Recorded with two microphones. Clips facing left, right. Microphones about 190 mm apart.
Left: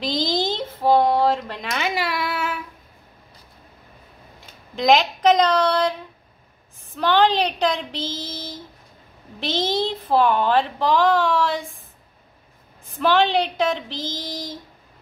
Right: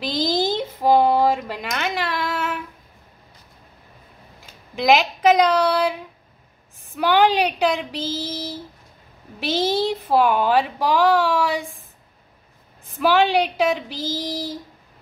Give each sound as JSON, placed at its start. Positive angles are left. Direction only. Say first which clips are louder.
{"t": 0.0, "sound": "a sound", "louder": "right 1 dB", "side_deg": -5}
{"t": 4.7, "sound": "speech", "louder": "even", "side_deg": -5}
{"t": 13.0, "sound": "speech", "louder": "right 1 dB", "side_deg": -10}